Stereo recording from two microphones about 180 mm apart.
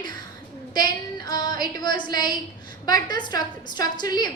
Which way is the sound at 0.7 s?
20° left (ahead or behind).